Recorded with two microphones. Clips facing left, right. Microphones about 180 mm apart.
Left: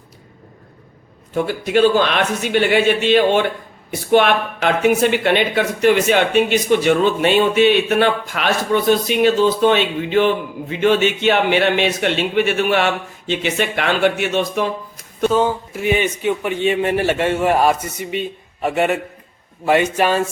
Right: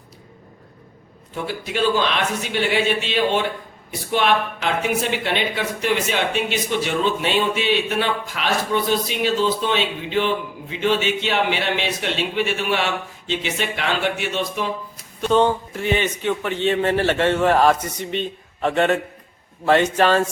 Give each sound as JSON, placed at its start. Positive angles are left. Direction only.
{"t": 1.7, "sound": "speech", "side_deg": 55}
{"t": 15.3, "sound": "a man's voice", "side_deg": 5}